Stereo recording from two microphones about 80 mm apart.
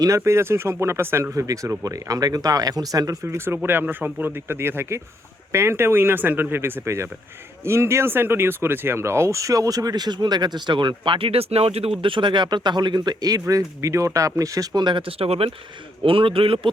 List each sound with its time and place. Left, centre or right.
0.0 s speech: right
3.2 s speech: right
13.5 s speech: right
16.0 s speech: right